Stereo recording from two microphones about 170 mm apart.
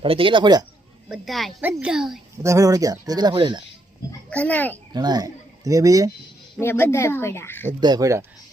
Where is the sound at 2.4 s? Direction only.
20° right (ahead or behind).